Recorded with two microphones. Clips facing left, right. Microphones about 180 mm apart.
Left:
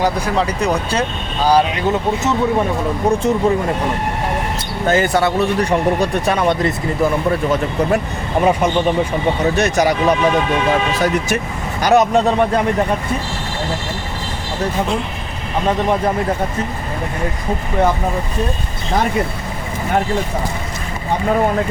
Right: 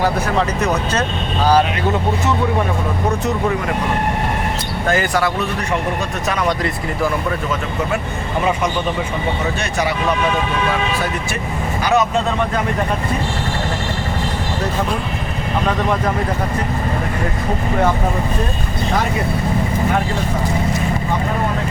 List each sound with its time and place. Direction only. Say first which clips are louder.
0.0 s speech: even; 15° left (ahead or behind)
4.9 s speech: left 3 dB; 25° left (ahead or behind)
9.6 s speech: left 5 dB; 40° left (ahead or behind)